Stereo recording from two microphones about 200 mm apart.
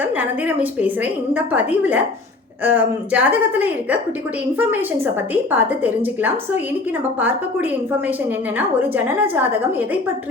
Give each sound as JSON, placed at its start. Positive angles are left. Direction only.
{"t": 0.0, "sound": "a woman's voice", "side_deg": -10}